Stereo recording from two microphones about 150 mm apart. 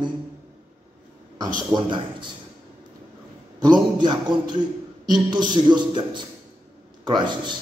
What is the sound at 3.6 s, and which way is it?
A man's voice, 30° right (ahead or behind).